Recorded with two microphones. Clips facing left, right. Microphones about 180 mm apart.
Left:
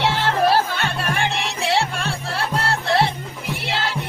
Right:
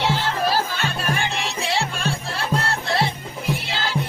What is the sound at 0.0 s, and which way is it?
Music, 65° left (ahead or behind).